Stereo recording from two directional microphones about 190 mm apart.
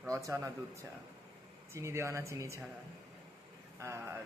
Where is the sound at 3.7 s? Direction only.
15° right (ahead or behind).